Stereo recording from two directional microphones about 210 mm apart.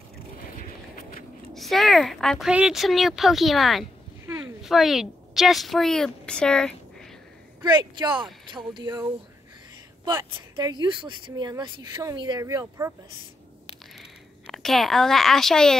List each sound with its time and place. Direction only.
0.4 s a sound: 40° left (ahead or behind)
1.5 s a woman's voice: centre (ahead or behind)
7.6 s speech: 20° right (ahead or behind)
10.0 s speech: 20° right (ahead or behind)
13.9 s speech: centre (ahead or behind)